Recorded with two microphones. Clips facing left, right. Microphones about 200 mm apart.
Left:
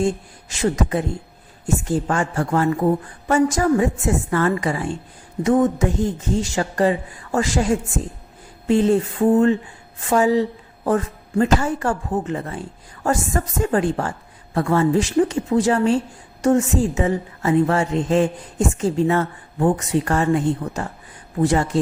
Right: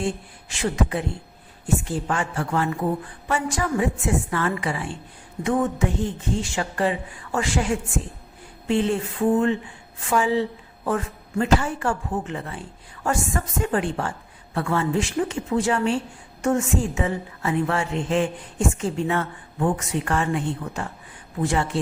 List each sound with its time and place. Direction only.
0.0 s a woman's voice: 40° left (ahead or behind)